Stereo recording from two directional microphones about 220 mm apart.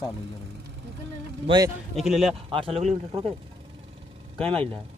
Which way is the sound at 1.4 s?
20° right (ahead or behind).